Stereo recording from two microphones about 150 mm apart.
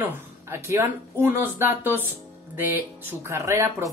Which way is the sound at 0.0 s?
15° right (ahead or behind).